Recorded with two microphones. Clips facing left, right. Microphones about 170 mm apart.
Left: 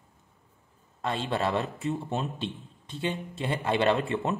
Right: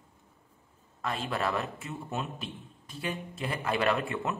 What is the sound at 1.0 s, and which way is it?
A man's voice, 25° left (ahead or behind).